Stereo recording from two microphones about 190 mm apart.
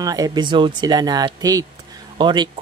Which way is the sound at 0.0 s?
20° right (ahead or behind).